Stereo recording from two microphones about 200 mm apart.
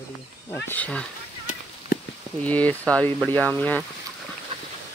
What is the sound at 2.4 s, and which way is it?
Speech, 5° left (ahead or behind).